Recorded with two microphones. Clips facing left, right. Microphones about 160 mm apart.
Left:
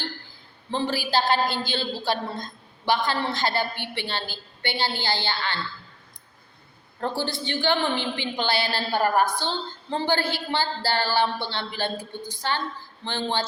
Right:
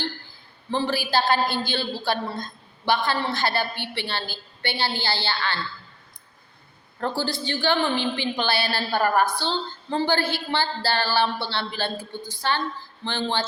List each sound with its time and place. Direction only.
0.7 s a woman's voice: 15° left (ahead or behind)
7.0 s a woman's voice: 20° left (ahead or behind)